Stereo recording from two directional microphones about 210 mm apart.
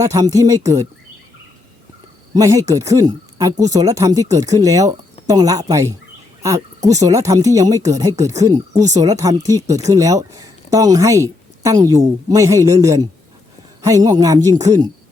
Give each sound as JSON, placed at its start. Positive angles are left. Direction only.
{"t": 0.0, "sound": "a woman's voice", "side_deg": -15}
{"t": 2.3, "sound": "a woman's voice", "side_deg": -15}